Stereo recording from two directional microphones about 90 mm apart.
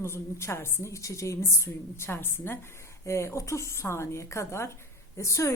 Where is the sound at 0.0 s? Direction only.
30° left (ahead or behind).